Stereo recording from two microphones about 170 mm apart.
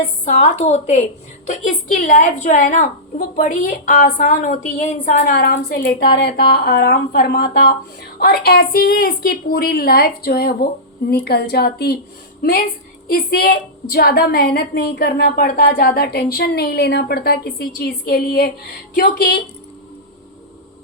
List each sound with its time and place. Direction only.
0.3 s a woman's voice: 40° left (ahead or behind)
5.3 s a woman's voice: 65° left (ahead or behind)